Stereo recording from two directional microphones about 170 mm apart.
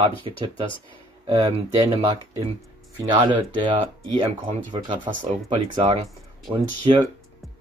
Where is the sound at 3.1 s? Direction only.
30° right (ahead or behind).